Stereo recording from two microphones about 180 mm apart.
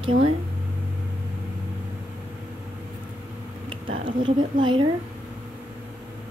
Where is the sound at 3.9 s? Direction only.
25° right (ahead or behind).